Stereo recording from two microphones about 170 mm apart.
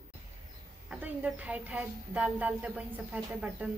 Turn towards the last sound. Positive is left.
turn(degrees=-5)  # may be behind; listen again after turning